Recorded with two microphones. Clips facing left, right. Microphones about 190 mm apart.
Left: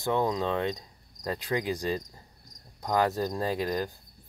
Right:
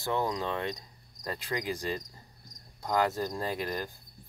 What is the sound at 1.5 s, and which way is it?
Speech, 10° left (ahead or behind).